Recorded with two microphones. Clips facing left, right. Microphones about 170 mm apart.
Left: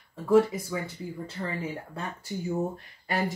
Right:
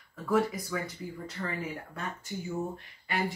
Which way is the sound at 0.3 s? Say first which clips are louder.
Left 6 dB; 25° left (ahead or behind).